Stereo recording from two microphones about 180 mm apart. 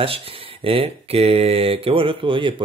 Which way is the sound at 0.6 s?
30° right (ahead or behind).